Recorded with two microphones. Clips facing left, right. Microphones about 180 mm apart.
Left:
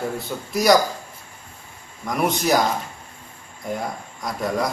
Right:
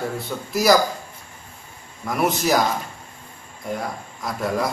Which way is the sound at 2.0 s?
Centre (ahead or behind).